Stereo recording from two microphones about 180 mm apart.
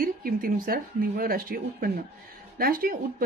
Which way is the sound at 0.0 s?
55° right (ahead or behind).